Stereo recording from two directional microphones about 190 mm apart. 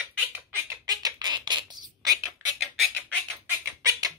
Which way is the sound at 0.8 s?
20° right (ahead or behind).